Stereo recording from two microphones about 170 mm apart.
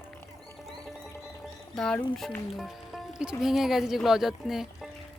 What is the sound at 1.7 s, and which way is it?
Speech, 5° left (ahead or behind).